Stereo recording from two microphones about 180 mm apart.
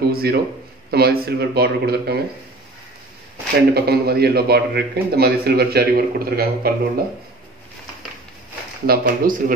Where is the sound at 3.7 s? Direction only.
60° right (ahead or behind).